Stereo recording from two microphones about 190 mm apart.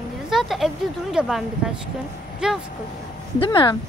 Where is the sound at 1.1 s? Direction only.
Centre (ahead or behind).